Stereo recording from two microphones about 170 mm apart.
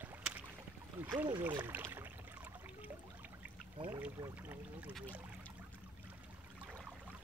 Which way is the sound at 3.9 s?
10° right (ahead or behind).